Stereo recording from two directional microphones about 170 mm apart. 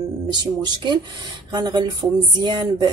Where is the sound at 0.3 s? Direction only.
25° right (ahead or behind).